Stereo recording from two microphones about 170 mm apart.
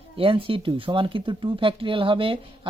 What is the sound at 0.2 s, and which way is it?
Speech, 30° right (ahead or behind).